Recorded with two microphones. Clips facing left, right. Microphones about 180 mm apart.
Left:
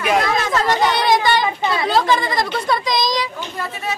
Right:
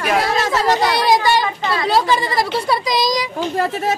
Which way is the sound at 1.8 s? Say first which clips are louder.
Right 1 dB; 10° right (ahead or behind).